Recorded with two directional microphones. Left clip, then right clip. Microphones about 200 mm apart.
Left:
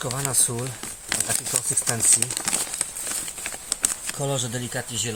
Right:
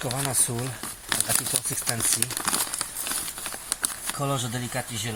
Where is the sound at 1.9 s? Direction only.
10° left (ahead or behind).